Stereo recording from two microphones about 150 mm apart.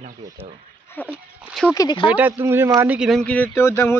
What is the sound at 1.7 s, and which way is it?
Speech, 25° left (ahead or behind).